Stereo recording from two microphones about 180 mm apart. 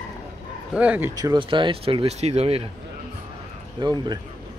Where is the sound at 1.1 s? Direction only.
20° right (ahead or behind).